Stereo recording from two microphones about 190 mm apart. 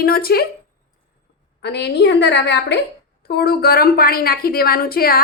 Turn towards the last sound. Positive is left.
turn(degrees=50)  # may be behind; listen again after turning